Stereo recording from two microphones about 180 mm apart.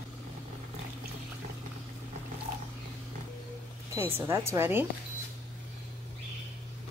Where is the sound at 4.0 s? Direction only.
15° right (ahead or behind).